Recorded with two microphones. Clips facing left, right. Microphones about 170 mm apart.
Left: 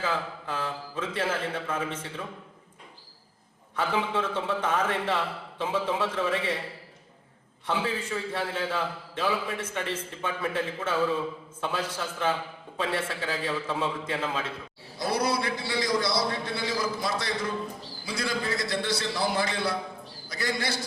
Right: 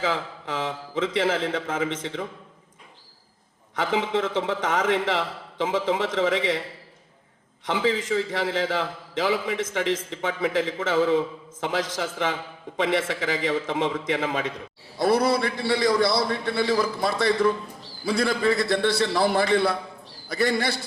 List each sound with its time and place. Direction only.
0.0 s a man's voice: 90° right
3.8 s a man's voice: 90° right
7.6 s a man's voice: 90° right
14.9 s a man's voice: 60° right (ahead or behind)